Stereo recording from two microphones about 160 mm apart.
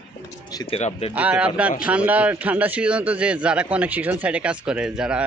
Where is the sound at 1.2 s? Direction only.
10° right (ahead or behind).